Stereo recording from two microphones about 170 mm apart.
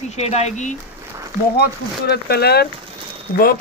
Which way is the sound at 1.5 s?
70° left (ahead or behind).